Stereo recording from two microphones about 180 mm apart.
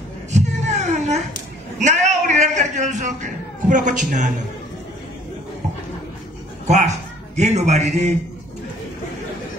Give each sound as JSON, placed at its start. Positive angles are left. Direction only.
{"t": 0.3, "sound": "a sound", "side_deg": -40}
{"t": 1.8, "sound": "a man's voice", "side_deg": -40}
{"t": 6.7, "sound": "speech", "side_deg": -40}